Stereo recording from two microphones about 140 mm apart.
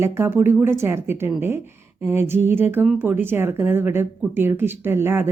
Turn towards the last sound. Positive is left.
turn(degrees=-15)  # may be behind; listen again after turning